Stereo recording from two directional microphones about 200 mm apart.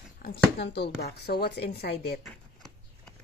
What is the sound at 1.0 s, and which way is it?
Speech, 55° left (ahead or behind).